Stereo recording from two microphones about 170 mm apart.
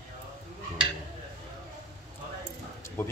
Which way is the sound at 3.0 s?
15° left (ahead or behind).